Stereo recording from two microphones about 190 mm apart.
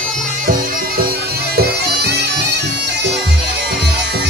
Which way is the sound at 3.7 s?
60° right (ahead or behind).